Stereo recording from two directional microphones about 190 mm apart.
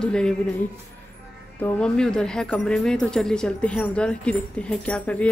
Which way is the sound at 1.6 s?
5° left (ahead or behind).